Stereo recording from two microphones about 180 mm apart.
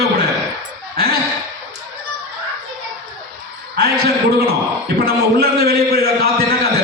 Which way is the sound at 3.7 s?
60° right (ahead or behind).